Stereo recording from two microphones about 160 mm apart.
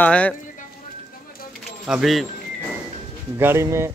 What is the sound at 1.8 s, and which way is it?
Speech, centre (ahead or behind).